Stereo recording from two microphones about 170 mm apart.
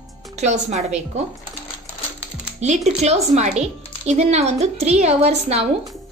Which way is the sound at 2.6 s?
40° right (ahead or behind).